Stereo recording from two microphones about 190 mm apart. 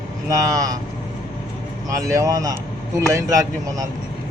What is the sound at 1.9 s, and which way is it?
Speech, 15° right (ahead or behind).